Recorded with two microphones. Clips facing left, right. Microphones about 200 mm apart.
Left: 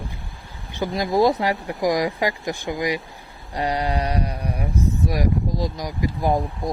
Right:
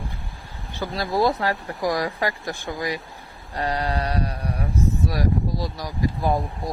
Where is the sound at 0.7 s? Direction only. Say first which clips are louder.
Left 4 dB; 15° left (ahead or behind).